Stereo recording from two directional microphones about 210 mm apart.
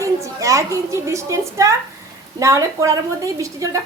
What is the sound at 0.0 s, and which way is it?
A woman's voice, 15° right (ahead or behind).